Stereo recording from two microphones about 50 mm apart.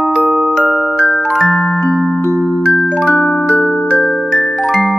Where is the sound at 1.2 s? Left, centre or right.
Centre.